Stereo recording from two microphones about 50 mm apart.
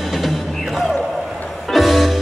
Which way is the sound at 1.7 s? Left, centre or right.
Centre.